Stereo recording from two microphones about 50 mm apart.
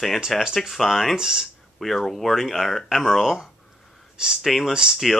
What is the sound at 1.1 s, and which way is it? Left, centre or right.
Speech, centre.